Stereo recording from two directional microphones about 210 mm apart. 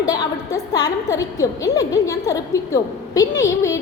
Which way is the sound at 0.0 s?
15° left (ahead or behind).